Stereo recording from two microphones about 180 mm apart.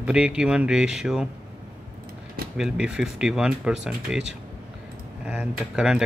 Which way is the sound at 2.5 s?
5° right (ahead or behind).